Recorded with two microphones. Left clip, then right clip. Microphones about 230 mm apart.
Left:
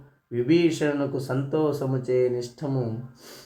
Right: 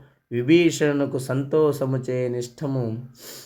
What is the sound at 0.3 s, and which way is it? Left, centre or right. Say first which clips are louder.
Speech: right 3 dB; right.